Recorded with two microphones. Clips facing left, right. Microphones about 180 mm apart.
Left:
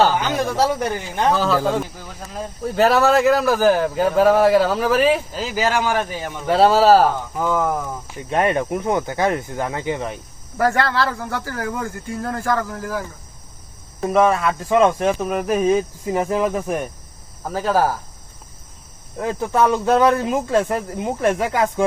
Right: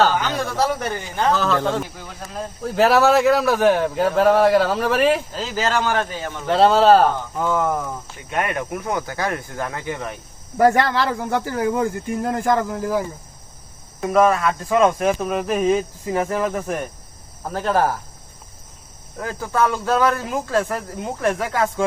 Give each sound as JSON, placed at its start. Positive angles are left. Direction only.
{"t": 0.0, "sound": "a man's voice", "side_deg": 15}
{"t": 8.3, "sound": "speech", "side_deg": 30}
{"t": 10.6, "sound": "speech", "side_deg": -20}
{"t": 14.0, "sound": "speech", "side_deg": 0}
{"t": 15.4, "sound": "a man's voice", "side_deg": 10}
{"t": 19.2, "sound": "speech", "side_deg": 20}